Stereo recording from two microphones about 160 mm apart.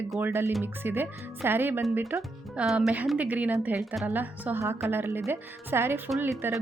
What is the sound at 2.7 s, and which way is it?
Speech, 5° right (ahead or behind).